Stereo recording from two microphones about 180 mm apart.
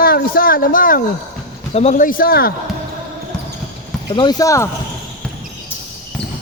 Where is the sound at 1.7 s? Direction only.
40° left (ahead or behind); by 2.5 s 55° left (ahead or behind).